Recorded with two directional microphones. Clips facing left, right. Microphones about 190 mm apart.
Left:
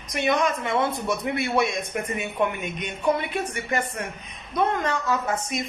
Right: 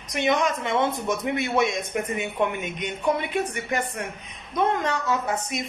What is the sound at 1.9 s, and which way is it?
Speech, 15° right (ahead or behind).